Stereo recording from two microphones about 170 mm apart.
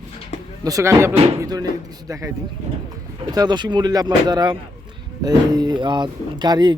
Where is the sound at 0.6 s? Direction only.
15° right (ahead or behind).